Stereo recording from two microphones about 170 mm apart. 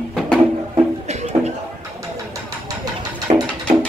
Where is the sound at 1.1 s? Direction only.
40° right (ahead or behind).